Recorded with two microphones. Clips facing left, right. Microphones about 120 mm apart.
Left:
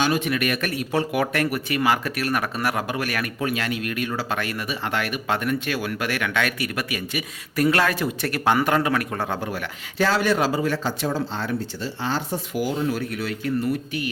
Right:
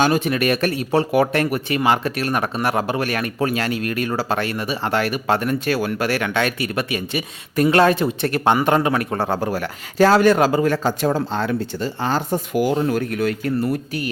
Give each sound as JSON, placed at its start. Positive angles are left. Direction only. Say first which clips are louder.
{"t": 0.0, "sound": "speech", "louder": "right 4 dB", "side_deg": -45}
{"t": 0.3, "sound": "speech", "louder": "right 5 dB", "side_deg": -30}